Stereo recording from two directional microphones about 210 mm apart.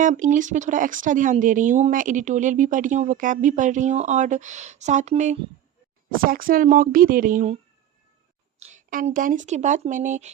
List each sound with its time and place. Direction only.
0.0 s speech: 35° right (ahead or behind)
8.5 s speech: 35° right (ahead or behind)